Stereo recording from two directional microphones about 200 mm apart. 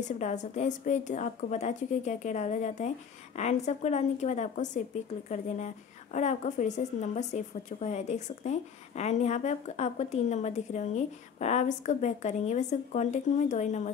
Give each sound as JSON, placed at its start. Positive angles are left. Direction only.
{"t": 0.2, "sound": "speech", "side_deg": 35}
{"t": 6.1, "sound": "speech", "side_deg": 35}